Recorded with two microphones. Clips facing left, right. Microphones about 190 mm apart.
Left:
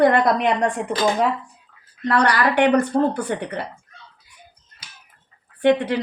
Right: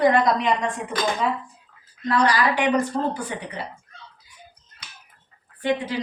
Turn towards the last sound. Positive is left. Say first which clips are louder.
# left 7 dB
turn(degrees=65)  # may be behind; listen again after turning